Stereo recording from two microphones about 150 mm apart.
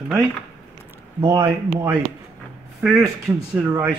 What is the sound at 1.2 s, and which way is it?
Speech, 25° right (ahead or behind).